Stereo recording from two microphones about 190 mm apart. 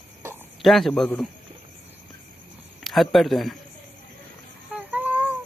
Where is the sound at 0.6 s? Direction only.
Centre (ahead or behind).